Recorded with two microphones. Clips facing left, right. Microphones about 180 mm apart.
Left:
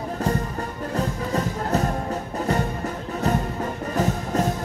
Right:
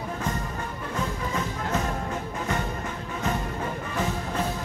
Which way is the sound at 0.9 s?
40° left (ahead or behind).